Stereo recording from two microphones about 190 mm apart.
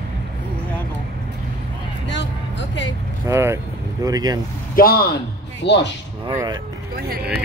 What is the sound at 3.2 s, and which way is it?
Speech, 15° right (ahead or behind).